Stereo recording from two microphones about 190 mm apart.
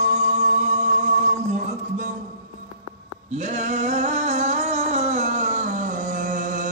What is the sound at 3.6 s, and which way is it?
Music, 35° right (ahead or behind).